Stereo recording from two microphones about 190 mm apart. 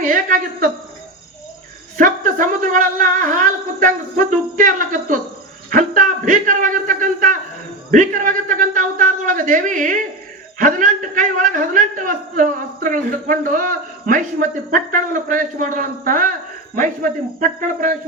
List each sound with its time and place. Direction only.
0.0 s a woman's voice: 45° right (ahead or behind)
2.0 s a man's voice: 45° right (ahead or behind)